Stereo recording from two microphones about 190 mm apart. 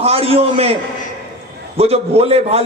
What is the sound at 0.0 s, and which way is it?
Speech, 30° right (ahead or behind).